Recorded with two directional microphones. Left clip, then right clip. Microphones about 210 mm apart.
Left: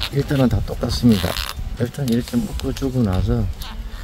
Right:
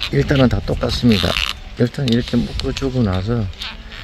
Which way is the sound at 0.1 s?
25° right (ahead or behind).